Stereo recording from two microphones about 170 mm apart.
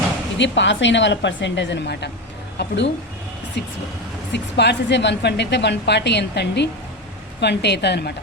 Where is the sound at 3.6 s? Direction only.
90° left.